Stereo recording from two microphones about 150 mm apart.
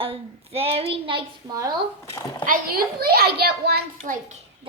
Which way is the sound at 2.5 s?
80° right.